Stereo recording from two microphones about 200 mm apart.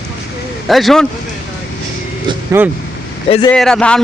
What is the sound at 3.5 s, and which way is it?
Speech, 5° left (ahead or behind).